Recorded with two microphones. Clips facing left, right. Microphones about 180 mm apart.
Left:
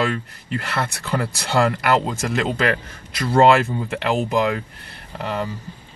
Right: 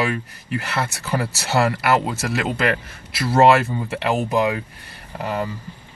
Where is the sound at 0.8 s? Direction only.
10° right (ahead or behind).